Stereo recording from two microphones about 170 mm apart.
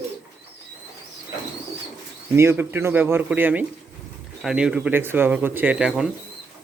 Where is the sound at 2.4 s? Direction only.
15° right (ahead or behind).